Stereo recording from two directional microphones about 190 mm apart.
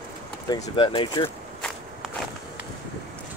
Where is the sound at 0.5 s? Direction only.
25° left (ahead or behind).